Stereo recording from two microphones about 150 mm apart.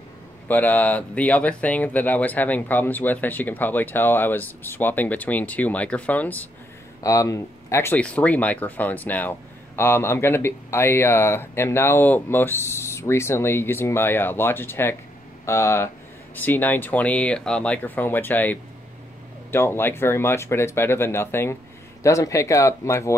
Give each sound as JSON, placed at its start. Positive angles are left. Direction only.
{"t": 0.5, "sound": "speech", "side_deg": 10}
{"t": 7.0, "sound": "speech", "side_deg": 20}